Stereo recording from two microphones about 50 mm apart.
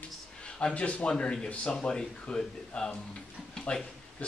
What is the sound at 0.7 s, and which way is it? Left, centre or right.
A man's voice, left.